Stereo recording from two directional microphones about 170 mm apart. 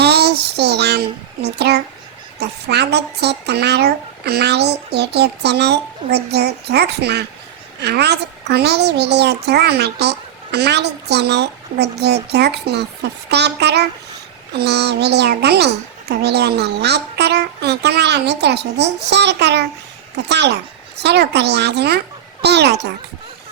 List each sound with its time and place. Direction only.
0.0 s child singing: 70° right (ahead or behind)
2.4 s a child's voice: 80° right
20.9 s a child's voice: 80° right